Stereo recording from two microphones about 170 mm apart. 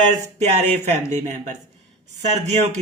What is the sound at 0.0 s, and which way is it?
Speech, 40° right (ahead or behind).